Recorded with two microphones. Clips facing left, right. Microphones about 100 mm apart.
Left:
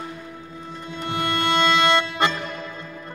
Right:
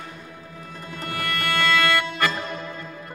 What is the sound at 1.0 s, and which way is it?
Music, 25° left (ahead or behind).